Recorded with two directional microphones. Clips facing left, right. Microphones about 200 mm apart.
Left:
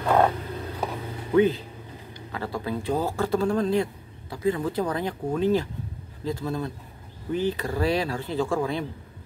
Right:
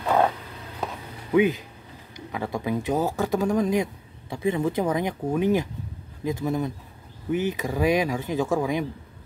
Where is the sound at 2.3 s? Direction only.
15° right (ahead or behind).